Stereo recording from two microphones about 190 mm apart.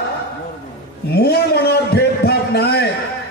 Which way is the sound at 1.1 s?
55° left (ahead or behind).